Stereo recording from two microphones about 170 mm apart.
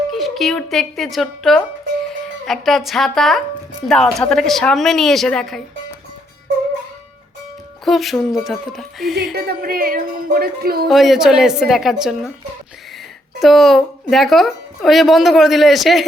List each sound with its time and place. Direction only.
0.1 s a woman's voice: centre (ahead or behind)
7.9 s a woman's voice: centre (ahead or behind)
9.3 s speech: 60° right (ahead or behind)
10.8 s a woman's voice: centre (ahead or behind)
13.4 s a woman's voice: centre (ahead or behind)